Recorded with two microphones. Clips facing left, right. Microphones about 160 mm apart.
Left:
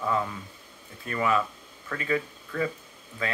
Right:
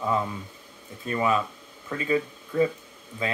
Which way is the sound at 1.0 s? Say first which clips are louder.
Right 1 dB; 20° right (ahead or behind).